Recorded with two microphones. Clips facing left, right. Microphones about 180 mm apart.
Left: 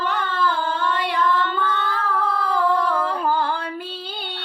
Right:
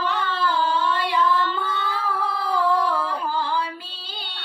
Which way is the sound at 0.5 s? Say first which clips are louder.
Right 1 dB; 55° left (ahead or behind).